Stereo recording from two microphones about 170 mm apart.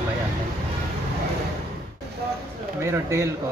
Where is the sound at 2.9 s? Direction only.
15° right (ahead or behind).